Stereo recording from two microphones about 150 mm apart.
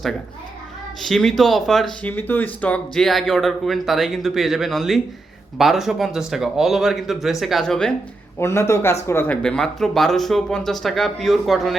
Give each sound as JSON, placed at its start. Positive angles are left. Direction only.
{"t": 1.0, "sound": "speech", "side_deg": 0}
{"t": 8.4, "sound": "speech", "side_deg": 20}